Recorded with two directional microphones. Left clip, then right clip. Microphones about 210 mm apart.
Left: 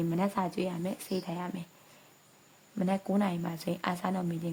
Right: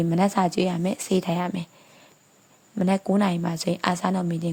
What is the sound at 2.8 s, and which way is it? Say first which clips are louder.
A woman's voice: right 8 dB; 25° right (ahead or behind).